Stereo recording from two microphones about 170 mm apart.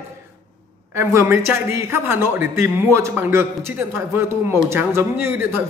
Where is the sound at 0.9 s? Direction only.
15° right (ahead or behind).